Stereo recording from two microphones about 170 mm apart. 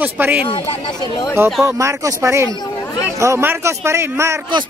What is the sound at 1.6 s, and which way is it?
Speech, 15° right (ahead or behind).